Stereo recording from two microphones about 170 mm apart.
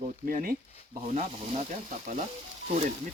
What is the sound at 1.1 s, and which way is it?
Speech, 40° right (ahead or behind).